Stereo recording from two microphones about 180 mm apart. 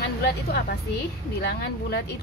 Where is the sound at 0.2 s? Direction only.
65° left (ahead or behind).